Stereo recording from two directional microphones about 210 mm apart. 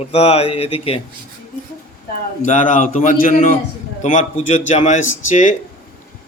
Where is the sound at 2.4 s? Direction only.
35° left (ahead or behind).